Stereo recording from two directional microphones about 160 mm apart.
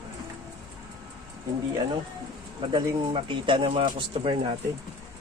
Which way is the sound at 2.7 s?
30° right (ahead or behind).